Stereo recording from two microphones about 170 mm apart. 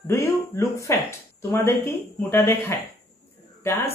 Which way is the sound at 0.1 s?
15° left (ahead or behind).